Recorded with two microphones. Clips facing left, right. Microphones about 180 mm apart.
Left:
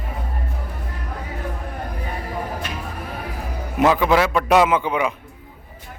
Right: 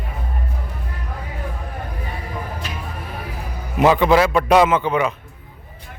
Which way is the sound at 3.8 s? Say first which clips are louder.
Right 2 dB; centre (ahead or behind).